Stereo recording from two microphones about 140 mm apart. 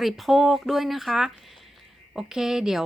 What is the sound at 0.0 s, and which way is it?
A woman's voice, centre (ahead or behind).